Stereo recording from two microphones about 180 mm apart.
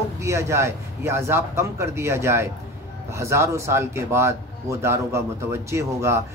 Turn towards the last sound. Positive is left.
turn(degrees=-15)  # may be behind; listen again after turning